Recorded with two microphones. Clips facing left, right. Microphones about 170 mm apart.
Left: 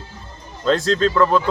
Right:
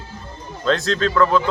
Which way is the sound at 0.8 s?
30° left (ahead or behind).